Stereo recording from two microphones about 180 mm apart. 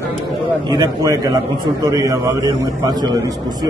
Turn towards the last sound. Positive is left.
turn(degrees=-20)  # may be behind; listen again after turning